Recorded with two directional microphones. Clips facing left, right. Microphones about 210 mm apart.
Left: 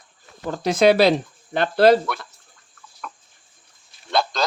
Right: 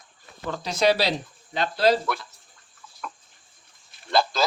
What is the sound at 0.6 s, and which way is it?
Speech, 55° left (ahead or behind).